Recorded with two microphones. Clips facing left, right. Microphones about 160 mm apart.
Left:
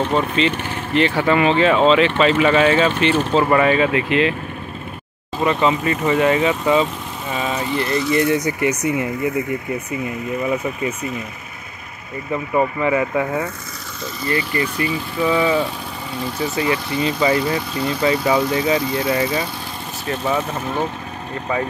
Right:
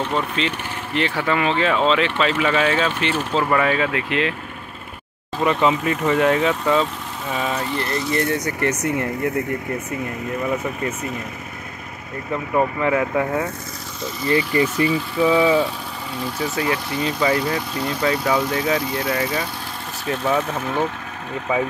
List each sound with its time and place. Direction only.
0.1 s speech: centre (ahead or behind)
5.4 s speech: centre (ahead or behind)
12.3 s speech: centre (ahead or behind)
14.2 s speech: 20° right (ahead or behind)
15.1 s speech: 10° right (ahead or behind)
21.5 s speech: 5° right (ahead or behind)